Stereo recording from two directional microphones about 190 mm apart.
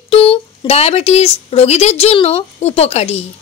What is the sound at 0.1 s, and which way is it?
Speech, 30° left (ahead or behind).